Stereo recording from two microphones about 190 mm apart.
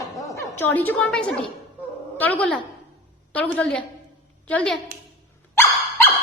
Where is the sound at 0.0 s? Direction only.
15° left (ahead or behind).